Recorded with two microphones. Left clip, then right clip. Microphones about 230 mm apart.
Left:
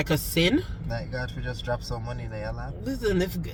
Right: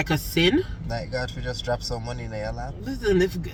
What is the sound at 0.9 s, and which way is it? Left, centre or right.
Speech, right.